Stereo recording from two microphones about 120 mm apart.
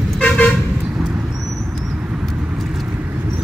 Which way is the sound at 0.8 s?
5° right (ahead or behind).